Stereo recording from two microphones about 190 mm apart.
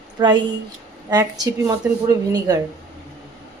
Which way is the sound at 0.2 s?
20° right (ahead or behind).